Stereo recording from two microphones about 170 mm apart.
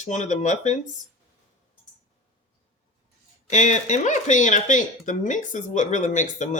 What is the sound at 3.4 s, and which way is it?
Speech, 45° left (ahead or behind).